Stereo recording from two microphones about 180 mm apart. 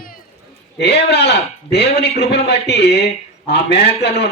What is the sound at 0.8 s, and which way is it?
Speech, 70° left (ahead or behind).